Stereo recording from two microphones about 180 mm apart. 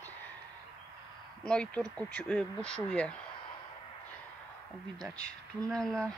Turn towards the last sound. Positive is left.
turn(degrees=5)  # may be behind; listen again after turning